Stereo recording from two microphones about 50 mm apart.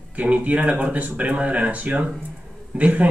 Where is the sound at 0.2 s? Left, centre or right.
Right.